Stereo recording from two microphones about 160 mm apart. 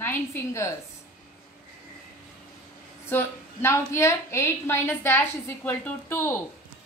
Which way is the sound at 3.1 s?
15° left (ahead or behind).